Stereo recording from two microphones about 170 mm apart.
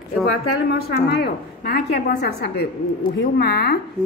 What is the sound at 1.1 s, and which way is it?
A woman's voice, 70° left (ahead or behind).